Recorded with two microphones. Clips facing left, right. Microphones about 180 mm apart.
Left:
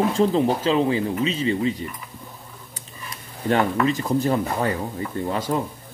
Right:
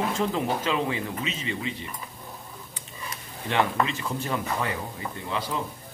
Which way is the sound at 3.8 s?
40° left (ahead or behind).